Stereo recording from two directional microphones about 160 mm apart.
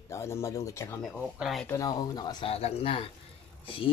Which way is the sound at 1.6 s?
20° left (ahead or behind).